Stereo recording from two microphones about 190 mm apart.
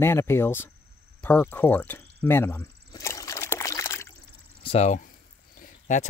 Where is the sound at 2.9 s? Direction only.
15° left (ahead or behind).